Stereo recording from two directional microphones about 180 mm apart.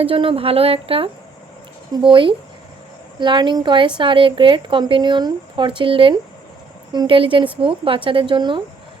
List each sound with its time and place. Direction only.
0.0 s a woman's voice: 30° right (ahead or behind)